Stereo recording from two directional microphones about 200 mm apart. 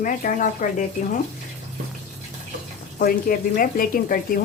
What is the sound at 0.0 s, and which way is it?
Speech, 40° left (ahead or behind).